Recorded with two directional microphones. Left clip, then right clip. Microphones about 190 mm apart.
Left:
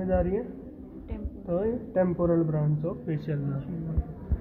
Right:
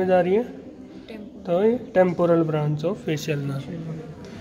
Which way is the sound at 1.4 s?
55° right (ahead or behind).